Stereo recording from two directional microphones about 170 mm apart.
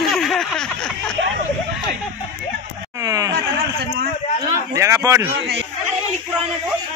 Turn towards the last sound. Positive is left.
turn(degrees=-15)  # may be behind; listen again after turning